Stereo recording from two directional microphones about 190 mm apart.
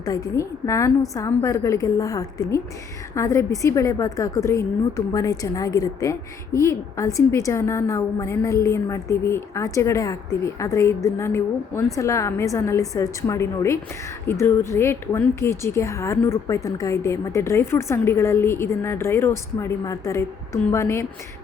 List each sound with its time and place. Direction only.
0.0 s speech: 20° left (ahead or behind)